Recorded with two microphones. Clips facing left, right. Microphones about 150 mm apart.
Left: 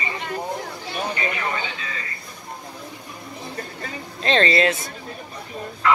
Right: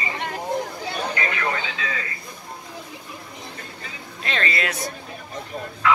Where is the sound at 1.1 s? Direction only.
75° right (ahead or behind).